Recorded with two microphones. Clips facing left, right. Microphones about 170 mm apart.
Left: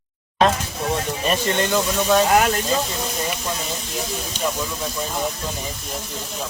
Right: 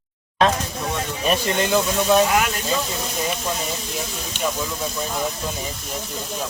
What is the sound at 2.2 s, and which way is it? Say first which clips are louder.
Speech: left 4 dB; 45° left (ahead or behind).